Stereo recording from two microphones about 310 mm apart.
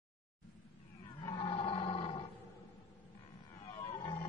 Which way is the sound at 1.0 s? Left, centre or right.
Centre.